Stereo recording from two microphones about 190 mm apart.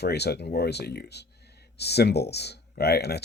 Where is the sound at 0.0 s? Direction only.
55° left (ahead or behind).